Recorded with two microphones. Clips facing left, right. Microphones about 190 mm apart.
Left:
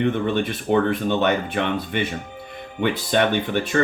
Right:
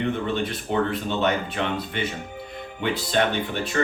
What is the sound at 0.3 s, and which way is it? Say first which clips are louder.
Speech: left 4 dB; 60° left (ahead or behind).